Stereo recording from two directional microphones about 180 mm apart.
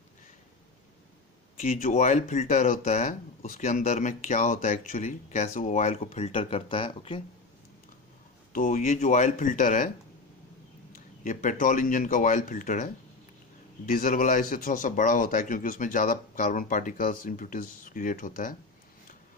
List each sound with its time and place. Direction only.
1.6 s speech: 40° left (ahead or behind)
8.5 s speech: 45° left (ahead or behind)
11.2 s speech: 45° left (ahead or behind)